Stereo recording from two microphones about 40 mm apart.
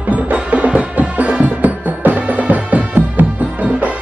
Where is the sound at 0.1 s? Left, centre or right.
Right.